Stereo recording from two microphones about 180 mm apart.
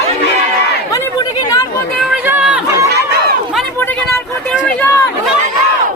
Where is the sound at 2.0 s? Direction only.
5° right (ahead or behind).